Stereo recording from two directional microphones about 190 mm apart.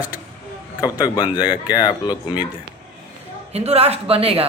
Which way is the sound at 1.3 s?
25° left (ahead or behind).